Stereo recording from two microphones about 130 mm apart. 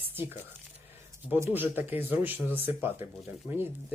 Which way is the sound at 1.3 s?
20° right (ahead or behind).